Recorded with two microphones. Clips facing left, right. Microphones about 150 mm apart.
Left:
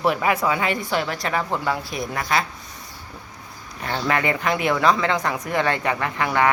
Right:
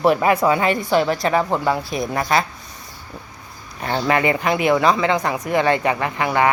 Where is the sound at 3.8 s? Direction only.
30° right (ahead or behind).